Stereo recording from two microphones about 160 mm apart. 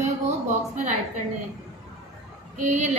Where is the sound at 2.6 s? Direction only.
50° right (ahead or behind).